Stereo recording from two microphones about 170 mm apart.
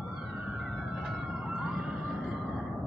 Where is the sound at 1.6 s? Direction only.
5° right (ahead or behind).